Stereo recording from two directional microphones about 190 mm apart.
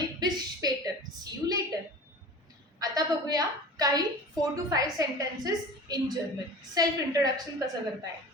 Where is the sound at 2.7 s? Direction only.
20° right (ahead or behind).